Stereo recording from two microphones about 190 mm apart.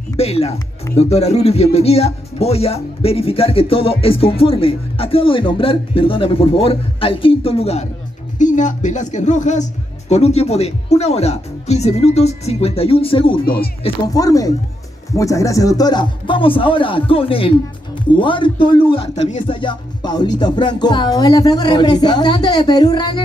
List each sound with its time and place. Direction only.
0.2 s speech: 35° left (ahead or behind)